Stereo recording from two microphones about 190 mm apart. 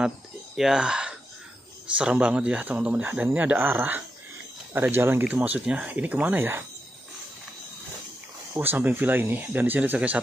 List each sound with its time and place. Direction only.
0.6 s speech: 5° right (ahead or behind)
8.5 s speech: 10° right (ahead or behind)